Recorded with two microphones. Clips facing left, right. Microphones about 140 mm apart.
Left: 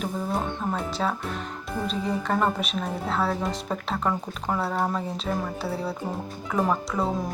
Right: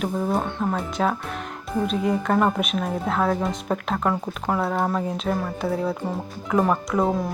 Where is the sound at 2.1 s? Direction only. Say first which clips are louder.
Right 3 dB; 10° right (ahead or behind).